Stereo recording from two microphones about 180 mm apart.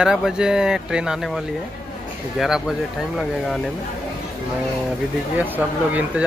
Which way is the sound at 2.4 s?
Centre (ahead or behind).